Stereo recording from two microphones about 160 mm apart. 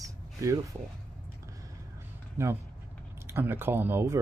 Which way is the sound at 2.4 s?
15° right (ahead or behind).